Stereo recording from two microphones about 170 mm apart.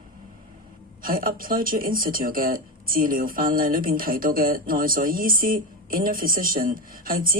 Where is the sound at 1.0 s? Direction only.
55° right (ahead or behind).